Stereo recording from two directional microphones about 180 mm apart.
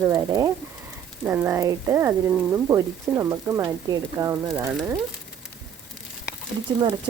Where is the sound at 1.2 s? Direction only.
10° right (ahead or behind).